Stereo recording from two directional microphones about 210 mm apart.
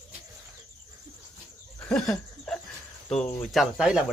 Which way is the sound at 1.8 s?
5° left (ahead or behind).